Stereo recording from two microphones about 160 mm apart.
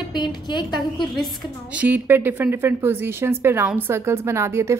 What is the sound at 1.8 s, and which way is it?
A woman's voice, 10° right (ahead or behind).